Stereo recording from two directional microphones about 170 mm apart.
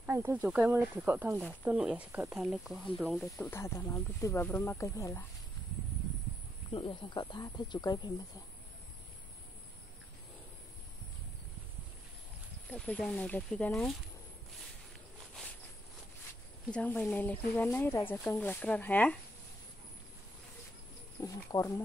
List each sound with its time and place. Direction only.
0.0 s speech: 10° right (ahead or behind)
3.1 s speech: 10° left (ahead or behind)
6.7 s speech: 30° left (ahead or behind)
12.6 s speech: 5° left (ahead or behind)
16.7 s speech: 10° left (ahead or behind)
21.2 s speech: 20° left (ahead or behind)